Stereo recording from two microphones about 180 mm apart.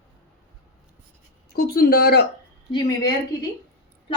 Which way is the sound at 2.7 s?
20° left (ahead or behind).